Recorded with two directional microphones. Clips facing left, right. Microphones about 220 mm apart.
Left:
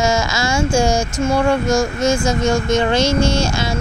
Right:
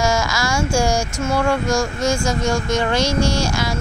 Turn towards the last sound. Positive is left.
turn(degrees=25)  # may be behind; listen again after turning